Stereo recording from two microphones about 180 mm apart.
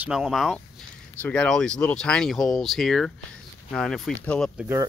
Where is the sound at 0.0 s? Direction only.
5° right (ahead or behind).